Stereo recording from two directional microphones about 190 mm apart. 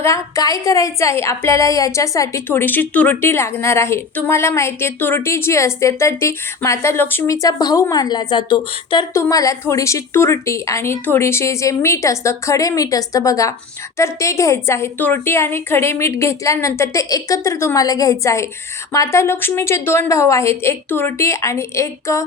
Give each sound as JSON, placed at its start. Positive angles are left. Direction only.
{"t": 0.0, "sound": "a woman's voice", "side_deg": 15}